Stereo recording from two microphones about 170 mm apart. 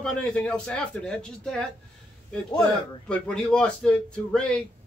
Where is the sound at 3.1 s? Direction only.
5° left (ahead or behind).